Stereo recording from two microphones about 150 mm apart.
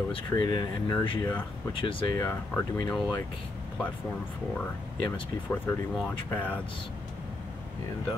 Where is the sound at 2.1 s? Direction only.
15° left (ahead or behind).